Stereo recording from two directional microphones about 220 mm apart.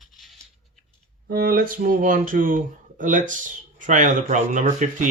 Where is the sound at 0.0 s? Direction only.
Centre (ahead or behind).